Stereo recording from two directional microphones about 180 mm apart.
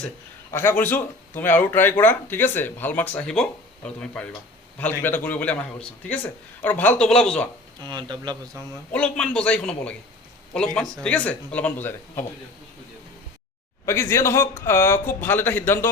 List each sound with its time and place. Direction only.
0.5 s speech: 10° left (ahead or behind)
7.9 s speech: 25° right (ahead or behind)
8.9 s a man's voice: 5° left (ahead or behind)
13.8 s speech: 15° left (ahead or behind)